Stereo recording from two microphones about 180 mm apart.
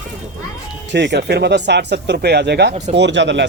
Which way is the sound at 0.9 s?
70° right (ahead or behind).